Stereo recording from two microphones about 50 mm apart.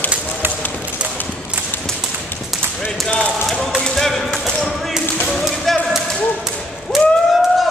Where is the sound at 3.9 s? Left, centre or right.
Centre.